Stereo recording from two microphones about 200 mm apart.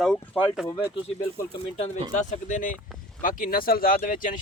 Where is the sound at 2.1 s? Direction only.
40° left (ahead or behind).